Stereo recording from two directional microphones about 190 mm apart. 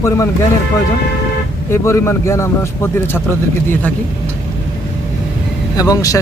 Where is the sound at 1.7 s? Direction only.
15° left (ahead or behind).